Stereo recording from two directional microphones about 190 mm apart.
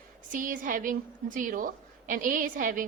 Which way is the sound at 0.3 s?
45° right (ahead or behind).